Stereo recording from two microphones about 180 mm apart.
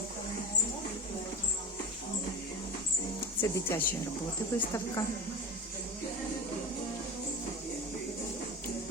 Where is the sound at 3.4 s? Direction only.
15° left (ahead or behind).